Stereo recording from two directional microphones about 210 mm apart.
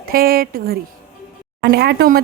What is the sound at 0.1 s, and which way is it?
A woman's voice, 45° right (ahead or behind).